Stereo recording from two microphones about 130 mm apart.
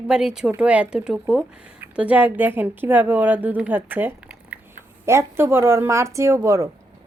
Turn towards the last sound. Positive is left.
turn(degrees=-25)  # may be behind; listen again after turning